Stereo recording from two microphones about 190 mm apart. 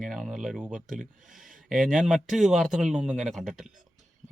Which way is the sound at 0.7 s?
45° right (ahead or behind).